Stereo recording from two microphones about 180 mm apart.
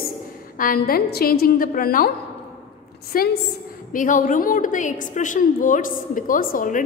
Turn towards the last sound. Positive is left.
turn(degrees=50)  # may be behind; listen again after turning